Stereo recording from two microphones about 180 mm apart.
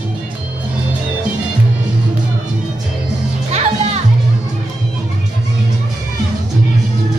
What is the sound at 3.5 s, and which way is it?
Music, 40° right (ahead or behind).